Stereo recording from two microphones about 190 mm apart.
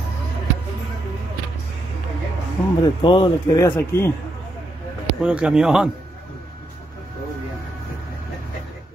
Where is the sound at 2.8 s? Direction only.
25° left (ahead or behind).